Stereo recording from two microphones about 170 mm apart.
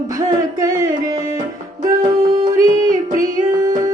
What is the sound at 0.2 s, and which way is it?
Music, 20° right (ahead or behind).